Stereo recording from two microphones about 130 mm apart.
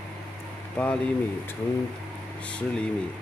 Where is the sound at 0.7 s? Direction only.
10° left (ahead or behind).